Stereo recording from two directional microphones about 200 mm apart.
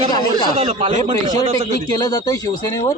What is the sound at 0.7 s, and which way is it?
A man's voice, 35° right (ahead or behind).